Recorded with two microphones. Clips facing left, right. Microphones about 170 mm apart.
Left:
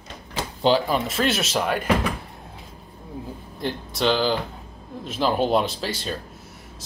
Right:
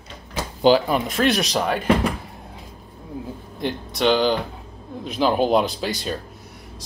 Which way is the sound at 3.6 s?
Centre (ahead or behind).